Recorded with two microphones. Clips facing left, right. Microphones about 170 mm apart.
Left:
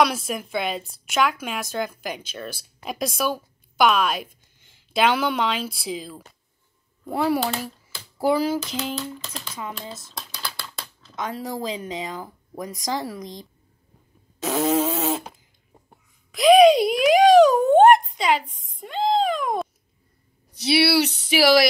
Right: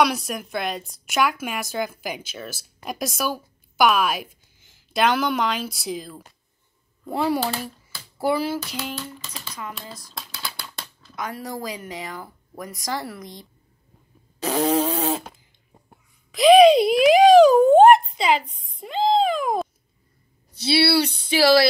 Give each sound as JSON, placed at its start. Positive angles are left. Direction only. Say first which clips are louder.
{"t": 0.0, "sound": "a woman's voice", "louder": "even", "side_deg": 0}
{"t": 8.3, "sound": "speech", "louder": "left 2 dB", "side_deg": 15}
{"t": 8.6, "sound": "a woman's voice", "louder": "left 3 dB", "side_deg": 0}
{"t": 10.1, "sound": "typing", "louder": "even", "side_deg": 0}
{"t": 11.1, "sound": "speech", "louder": "left 2 dB", "side_deg": 20}
{"t": 14.4, "sound": "fart", "louder": "even", "side_deg": 0}
{"t": 16.3, "sound": "a sound", "louder": "right 1 dB", "side_deg": 0}
{"t": 20.7, "sound": "speech", "louder": "even", "side_deg": 10}